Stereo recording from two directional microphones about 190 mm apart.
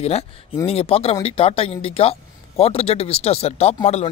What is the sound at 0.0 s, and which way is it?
Speech, 30° left (ahead or behind).